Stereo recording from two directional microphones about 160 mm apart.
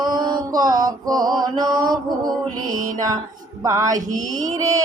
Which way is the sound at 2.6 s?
60° right (ahead or behind).